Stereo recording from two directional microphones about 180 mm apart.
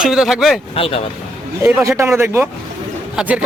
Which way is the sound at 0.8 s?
30° left (ahead or behind).